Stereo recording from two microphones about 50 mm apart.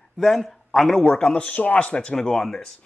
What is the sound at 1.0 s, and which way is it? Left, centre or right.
Speech, centre.